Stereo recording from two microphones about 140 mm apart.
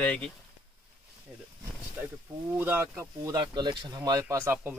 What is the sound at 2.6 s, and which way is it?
Speech, 15° right (ahead or behind).